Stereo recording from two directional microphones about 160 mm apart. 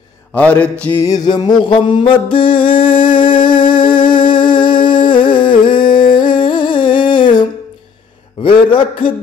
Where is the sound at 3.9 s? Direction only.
30° left (ahead or behind).